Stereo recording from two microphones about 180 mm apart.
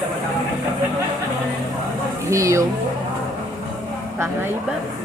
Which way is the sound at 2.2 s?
15° right (ahead or behind).